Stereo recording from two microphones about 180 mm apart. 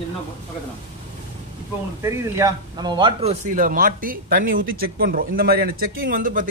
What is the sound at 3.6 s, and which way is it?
A man's voice, 50° right (ahead or behind).